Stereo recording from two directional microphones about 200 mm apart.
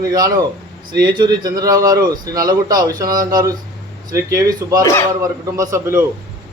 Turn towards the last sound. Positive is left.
turn(degrees=-15)  # may be behind; listen again after turning